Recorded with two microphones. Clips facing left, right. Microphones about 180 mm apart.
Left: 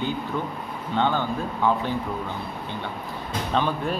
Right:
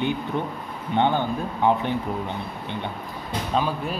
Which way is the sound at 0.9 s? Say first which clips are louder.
Right 2 dB; 20° right (ahead or behind).